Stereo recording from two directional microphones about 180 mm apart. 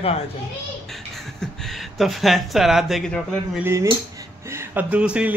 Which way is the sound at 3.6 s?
15° right (ahead or behind).